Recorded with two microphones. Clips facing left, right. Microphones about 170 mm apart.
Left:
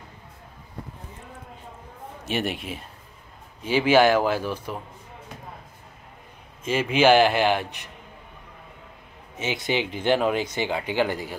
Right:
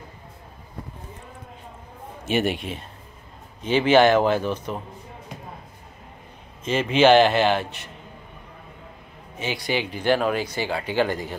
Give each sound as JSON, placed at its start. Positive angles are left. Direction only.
{"t": 2.2, "sound": "a man's voice", "side_deg": 0}
{"t": 6.6, "sound": "a man's voice", "side_deg": 10}
{"t": 9.4, "sound": "speech", "side_deg": 20}